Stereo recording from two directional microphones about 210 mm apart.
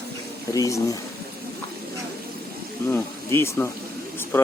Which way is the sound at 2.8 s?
10° left (ahead or behind).